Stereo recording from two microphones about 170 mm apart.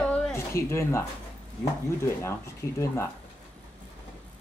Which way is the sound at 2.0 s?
15° left (ahead or behind).